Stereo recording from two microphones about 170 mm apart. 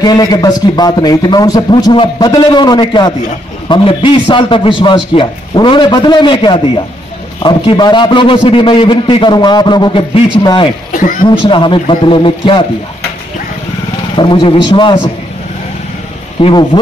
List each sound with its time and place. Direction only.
0.0 s a man's voice: 25° left (ahead or behind)
10.9 s speech: 55° left (ahead or behind)
11.2 s a man's voice: 30° left (ahead or behind)
14.1 s a man's voice: 30° left (ahead or behind)
16.3 s speech: 30° left (ahead or behind)